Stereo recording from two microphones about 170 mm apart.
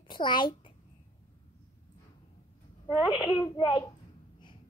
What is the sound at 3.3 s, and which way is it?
Speech, 25° left (ahead or behind).